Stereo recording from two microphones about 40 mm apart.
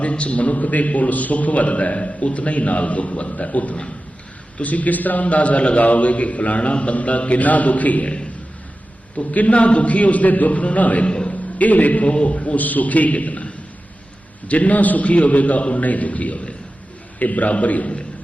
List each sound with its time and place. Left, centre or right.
0.0 s a man's voice: left
11.1 s a sound: left
11.6 s a man's voice: left
12.5 s a man's voice: left